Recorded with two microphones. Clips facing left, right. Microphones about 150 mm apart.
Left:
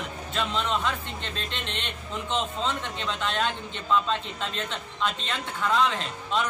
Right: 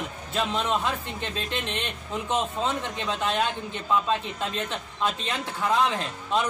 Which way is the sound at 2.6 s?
10° right (ahead or behind).